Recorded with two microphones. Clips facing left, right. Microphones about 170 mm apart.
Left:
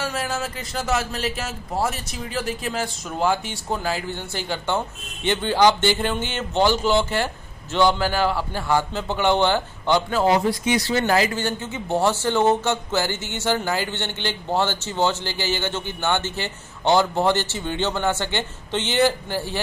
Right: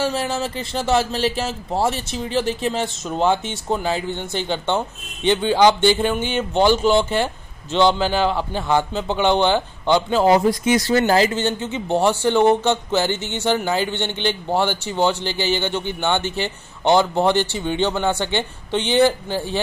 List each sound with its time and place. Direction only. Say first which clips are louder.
0.0 s speech: right 5 dB; 30° right (ahead or behind)
10.2 s speech: right 4 dB; 45° right (ahead or behind)
11.1 s speech: right 3 dB; 30° right (ahead or behind)